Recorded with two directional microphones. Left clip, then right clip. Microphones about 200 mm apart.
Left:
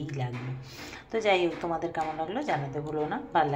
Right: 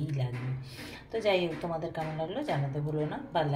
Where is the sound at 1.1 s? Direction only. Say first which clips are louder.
Left 3 dB; 10° left (ahead or behind).